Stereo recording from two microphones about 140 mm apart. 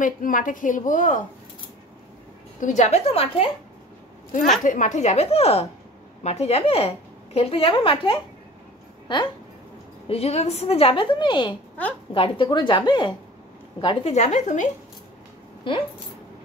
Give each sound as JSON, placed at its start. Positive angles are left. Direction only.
{"t": 0.0, "sound": "a woman's voice", "side_deg": 75}
{"t": 2.6, "sound": "a woman's voice", "side_deg": 60}
{"t": 4.6, "sound": "a woman's voice", "side_deg": 65}
{"t": 10.0, "sound": "a woman's voice", "side_deg": 45}
{"t": 14.1, "sound": "speech", "side_deg": 55}